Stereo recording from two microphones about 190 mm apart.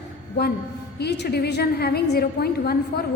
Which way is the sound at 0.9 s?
60° left (ahead or behind).